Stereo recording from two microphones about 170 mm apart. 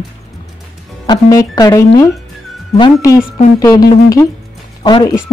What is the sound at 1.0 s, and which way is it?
Speech, 20° left (ahead or behind).